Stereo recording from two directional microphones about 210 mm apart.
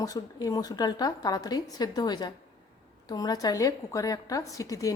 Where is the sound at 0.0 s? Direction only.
15° left (ahead or behind).